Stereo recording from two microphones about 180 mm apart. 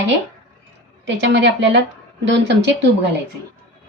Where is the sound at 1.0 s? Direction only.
85° right.